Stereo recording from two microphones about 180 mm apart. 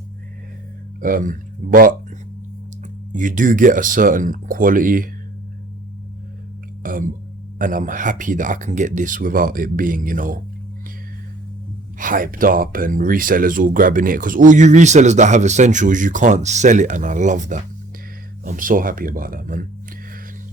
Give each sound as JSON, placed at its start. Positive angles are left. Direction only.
{"t": 1.0, "sound": "speech", "side_deg": -50}
{"t": 3.1, "sound": "speech", "side_deg": -45}
{"t": 6.8, "sound": "speech", "side_deg": -50}
{"t": 11.9, "sound": "speech", "side_deg": -50}